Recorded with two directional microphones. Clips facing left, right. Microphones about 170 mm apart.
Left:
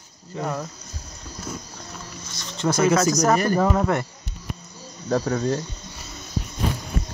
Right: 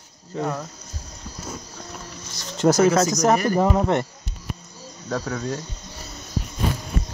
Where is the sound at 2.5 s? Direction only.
40° right (ahead or behind).